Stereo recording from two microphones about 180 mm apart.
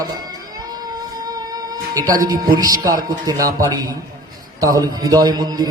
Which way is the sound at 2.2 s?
20° right (ahead or behind).